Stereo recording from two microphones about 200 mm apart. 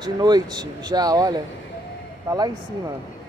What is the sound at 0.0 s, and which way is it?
Speech, 20° right (ahead or behind).